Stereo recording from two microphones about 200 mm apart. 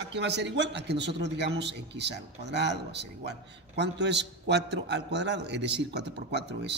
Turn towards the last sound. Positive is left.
turn(degrees=-60)  # may be behind; listen again after turning